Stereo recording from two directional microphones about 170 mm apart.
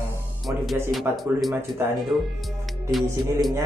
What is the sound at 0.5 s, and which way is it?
Speech, 10° right (ahead or behind).